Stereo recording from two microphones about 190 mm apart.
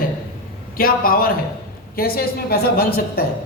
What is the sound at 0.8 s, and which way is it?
A man's voice, 50° left (ahead or behind).